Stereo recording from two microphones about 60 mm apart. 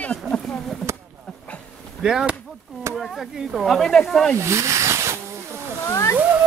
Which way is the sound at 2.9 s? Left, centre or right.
Right.